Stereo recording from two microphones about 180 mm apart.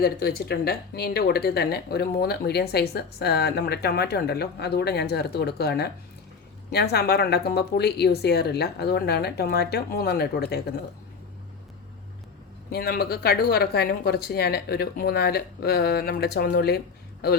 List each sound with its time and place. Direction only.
0.0 s speech: 60° left (ahead or behind)
12.7 s speech: 60° left (ahead or behind)